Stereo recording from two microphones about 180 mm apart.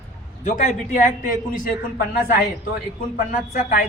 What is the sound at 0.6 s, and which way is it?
A woman's voice, 45° left (ahead or behind).